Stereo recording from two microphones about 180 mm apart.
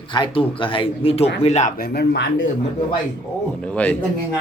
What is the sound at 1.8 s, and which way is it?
Speech, 65° left (ahead or behind).